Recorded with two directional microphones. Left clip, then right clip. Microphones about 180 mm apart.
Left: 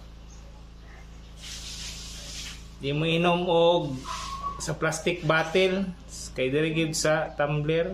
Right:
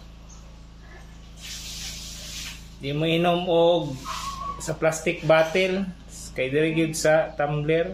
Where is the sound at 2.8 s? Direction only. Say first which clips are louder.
Right 2 dB; 10° left (ahead or behind).